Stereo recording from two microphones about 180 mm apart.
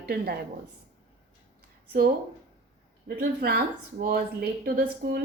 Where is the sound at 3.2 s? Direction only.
55° right (ahead or behind).